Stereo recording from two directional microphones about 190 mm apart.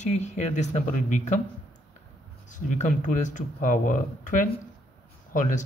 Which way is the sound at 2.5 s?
40° left (ahead or behind).